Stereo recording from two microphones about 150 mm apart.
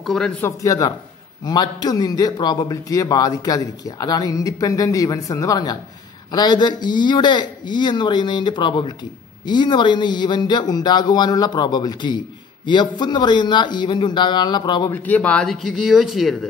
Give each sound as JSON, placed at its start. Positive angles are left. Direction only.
{"t": 0.0, "sound": "speech", "side_deg": 0}
{"t": 0.4, "sound": "a man's voice", "side_deg": 20}
{"t": 14.9, "sound": "speech", "side_deg": 10}